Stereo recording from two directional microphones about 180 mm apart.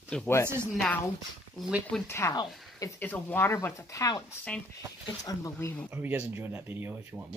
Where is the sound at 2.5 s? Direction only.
Centre (ahead or behind).